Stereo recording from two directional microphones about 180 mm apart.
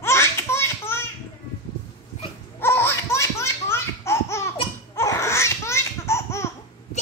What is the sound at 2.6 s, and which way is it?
Laughter, 15° left (ahead or behind).